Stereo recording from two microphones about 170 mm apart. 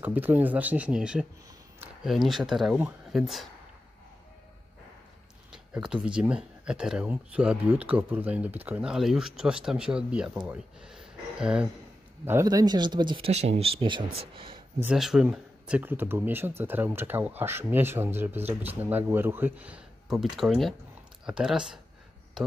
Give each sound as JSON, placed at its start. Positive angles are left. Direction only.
{"t": 0.0, "sound": "speech", "side_deg": -10}
{"t": 5.5, "sound": "speech", "side_deg": -5}
{"t": 12.3, "sound": "speech", "side_deg": -20}
{"t": 14.8, "sound": "speech", "side_deg": -5}